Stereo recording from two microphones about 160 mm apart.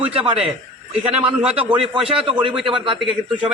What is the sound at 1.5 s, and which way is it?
A man's voice, 40° right (ahead or behind).